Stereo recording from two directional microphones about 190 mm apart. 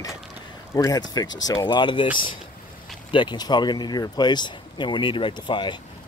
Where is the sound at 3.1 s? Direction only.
25° left (ahead or behind).